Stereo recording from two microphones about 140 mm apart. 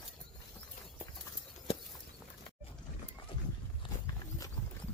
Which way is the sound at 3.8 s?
35° left (ahead or behind).